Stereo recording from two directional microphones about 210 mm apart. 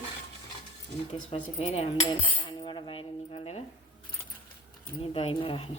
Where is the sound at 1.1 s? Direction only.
30° left (ahead or behind).